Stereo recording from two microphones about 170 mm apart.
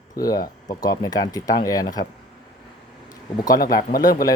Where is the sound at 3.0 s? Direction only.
20° left (ahead or behind).